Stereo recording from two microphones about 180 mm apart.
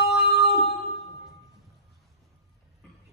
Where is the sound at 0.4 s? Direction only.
35° left (ahead or behind).